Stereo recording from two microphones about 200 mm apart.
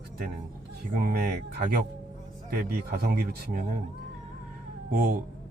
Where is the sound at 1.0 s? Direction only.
50° right (ahead or behind).